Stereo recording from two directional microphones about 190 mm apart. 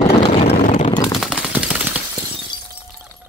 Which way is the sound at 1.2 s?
5° right (ahead or behind).